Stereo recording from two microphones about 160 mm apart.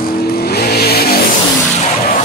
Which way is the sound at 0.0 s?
75° left (ahead or behind).